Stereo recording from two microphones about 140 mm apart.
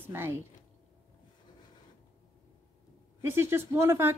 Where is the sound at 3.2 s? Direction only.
15° right (ahead or behind).